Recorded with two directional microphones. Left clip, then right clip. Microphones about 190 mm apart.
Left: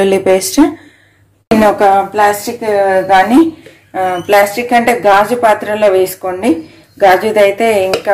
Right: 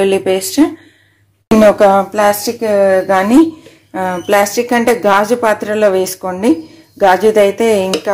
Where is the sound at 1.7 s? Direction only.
45° right (ahead or behind).